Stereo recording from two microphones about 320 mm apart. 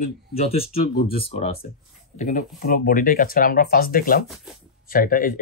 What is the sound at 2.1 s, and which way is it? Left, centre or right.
Speech, left.